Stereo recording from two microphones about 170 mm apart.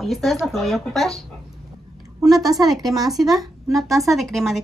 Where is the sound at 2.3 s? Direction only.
Centre (ahead or behind).